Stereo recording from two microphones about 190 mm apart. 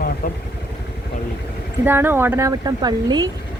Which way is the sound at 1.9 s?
10° right (ahead or behind).